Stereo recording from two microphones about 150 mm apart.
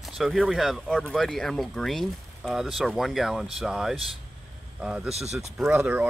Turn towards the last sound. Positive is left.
turn(degrees=-10)  # may be behind; listen again after turning